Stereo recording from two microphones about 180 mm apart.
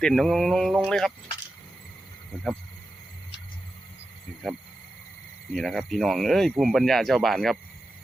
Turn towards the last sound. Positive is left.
turn(degrees=0)  # may be behind; listen again after turning